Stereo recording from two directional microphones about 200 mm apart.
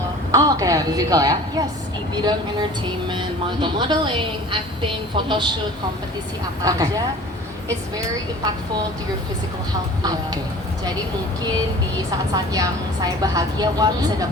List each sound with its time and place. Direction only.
0.3 s a woman's voice: 15° right (ahead or behind)
6.6 s a woman's voice: 15° right (ahead or behind)
10.0 s a woman's voice: 20° right (ahead or behind)
12.3 s a woman's voice: 20° right (ahead or behind)